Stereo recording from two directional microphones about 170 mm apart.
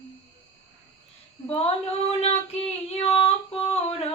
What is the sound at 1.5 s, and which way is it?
Singing, 35° left (ahead or behind).